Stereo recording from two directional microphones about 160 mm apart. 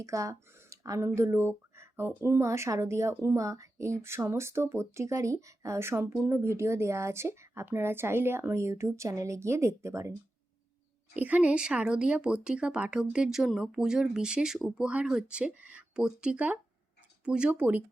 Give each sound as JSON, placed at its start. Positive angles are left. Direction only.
{"t": 0.0, "sound": "speech", "side_deg": -20}
{"t": 11.1, "sound": "speech", "side_deg": -10}